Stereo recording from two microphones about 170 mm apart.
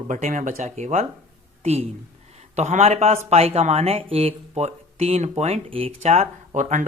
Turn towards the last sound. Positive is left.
turn(degrees=-45)  # may be behind; listen again after turning